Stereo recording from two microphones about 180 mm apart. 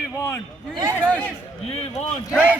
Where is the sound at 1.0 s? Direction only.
10° left (ahead or behind).